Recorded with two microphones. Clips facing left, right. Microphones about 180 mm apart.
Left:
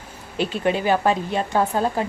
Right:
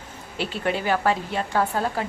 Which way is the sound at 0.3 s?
20° left (ahead or behind).